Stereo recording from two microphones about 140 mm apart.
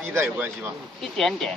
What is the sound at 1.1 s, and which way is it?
Speech, 5° left (ahead or behind).